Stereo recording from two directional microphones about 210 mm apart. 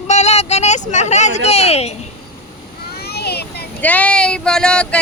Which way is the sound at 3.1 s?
50° left (ahead or behind).